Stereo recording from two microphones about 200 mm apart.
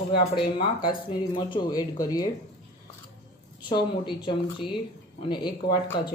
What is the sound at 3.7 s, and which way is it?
A woman's voice, 25° left (ahead or behind).